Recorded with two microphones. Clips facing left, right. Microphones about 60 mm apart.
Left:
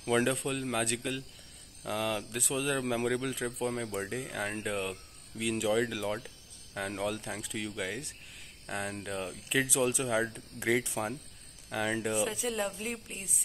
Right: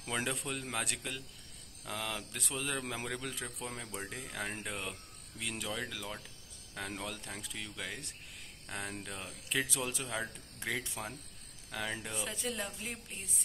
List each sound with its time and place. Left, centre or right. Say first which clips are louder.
0.0 s speech: left 8 dB; centre
6.1 s music: left 8 dB; left
6.8 s speech: left 7 dB; centre